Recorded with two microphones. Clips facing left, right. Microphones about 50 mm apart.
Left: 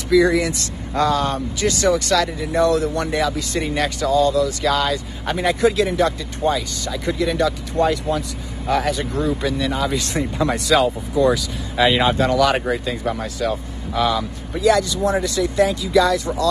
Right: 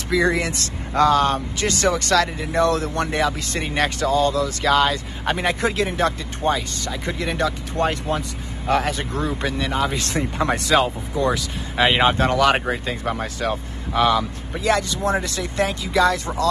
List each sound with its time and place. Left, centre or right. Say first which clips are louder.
0.1 s speech: left 4 dB; right
2.0 s speech: even; right
9.7 s speech: even; right
10.1 s speech: even; centre
10.7 s speech: left 4 dB; centre; by 16.4 s right